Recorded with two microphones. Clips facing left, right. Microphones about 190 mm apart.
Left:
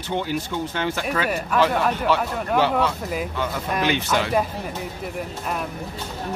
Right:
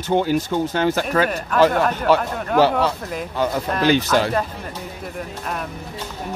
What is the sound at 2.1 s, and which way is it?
Speech, 40° right (ahead or behind).